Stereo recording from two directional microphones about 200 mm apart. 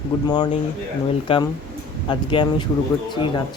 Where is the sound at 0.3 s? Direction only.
20° left (ahead or behind).